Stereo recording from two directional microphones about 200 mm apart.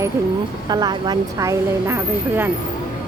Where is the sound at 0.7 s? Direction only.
20° right (ahead or behind).